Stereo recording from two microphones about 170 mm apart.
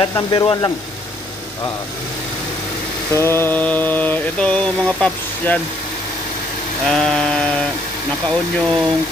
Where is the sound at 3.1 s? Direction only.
15° left (ahead or behind).